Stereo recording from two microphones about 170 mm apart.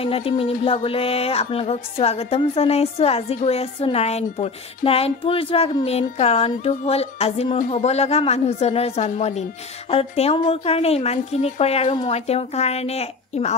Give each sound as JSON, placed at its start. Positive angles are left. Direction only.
{"t": 0.0, "sound": "music", "side_deg": 35}